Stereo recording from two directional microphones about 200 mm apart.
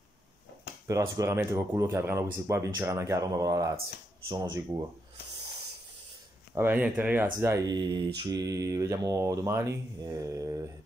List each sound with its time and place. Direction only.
0.8 s speech: 15° right (ahead or behind)
6.5 s speech: 10° right (ahead or behind)